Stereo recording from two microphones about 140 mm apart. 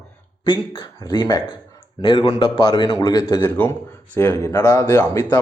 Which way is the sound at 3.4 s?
15° left (ahead or behind).